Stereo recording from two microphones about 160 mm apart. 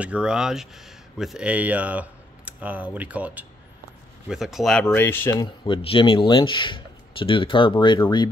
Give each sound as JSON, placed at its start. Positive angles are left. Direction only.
{"t": 0.0, "sound": "speech", "side_deg": -5}
{"t": 4.8, "sound": "speech", "side_deg": 15}
{"t": 5.3, "sound": "speech", "side_deg": 25}